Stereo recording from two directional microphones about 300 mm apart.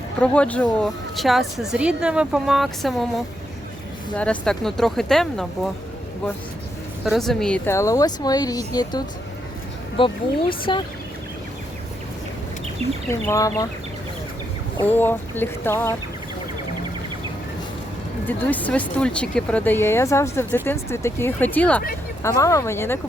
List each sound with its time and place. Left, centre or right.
0.2 s speech: centre
7.0 s a woman's voice: centre
13.1 s a woman's voice: centre
14.8 s a woman's voice: centre
18.3 s a woman's voice: centre